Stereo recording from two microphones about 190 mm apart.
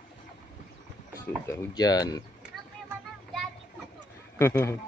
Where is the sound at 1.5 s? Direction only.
20° left (ahead or behind).